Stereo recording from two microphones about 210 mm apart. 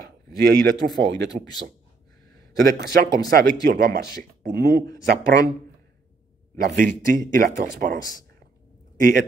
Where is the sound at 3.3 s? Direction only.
45° right (ahead or behind).